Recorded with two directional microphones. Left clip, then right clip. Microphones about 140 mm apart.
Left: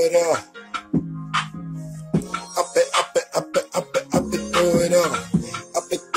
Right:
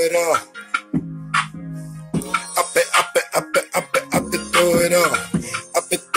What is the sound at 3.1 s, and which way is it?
Music, centre (ahead or behind).